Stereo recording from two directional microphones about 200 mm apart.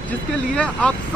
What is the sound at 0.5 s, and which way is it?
Speech, 5° left (ahead or behind).